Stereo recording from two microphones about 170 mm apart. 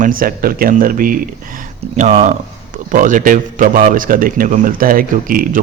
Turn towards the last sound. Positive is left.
turn(degrees=-55)  # may be behind; listen again after turning